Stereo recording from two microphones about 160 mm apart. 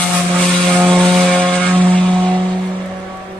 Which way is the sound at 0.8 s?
Centre (ahead or behind).